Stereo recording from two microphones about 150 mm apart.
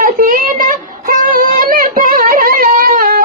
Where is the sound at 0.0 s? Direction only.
70° right (ahead or behind).